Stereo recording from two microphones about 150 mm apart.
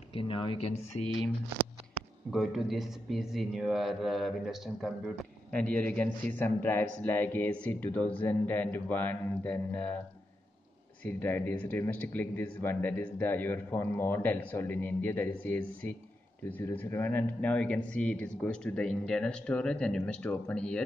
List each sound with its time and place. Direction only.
0.1 s speech: 35° left (ahead or behind)
2.3 s a man's voice: centre (ahead or behind)
5.6 s speech: 10° left (ahead or behind)
11.1 s speech: 15° left (ahead or behind)